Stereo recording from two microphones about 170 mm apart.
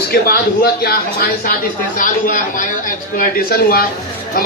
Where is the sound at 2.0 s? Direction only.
50° left (ahead or behind).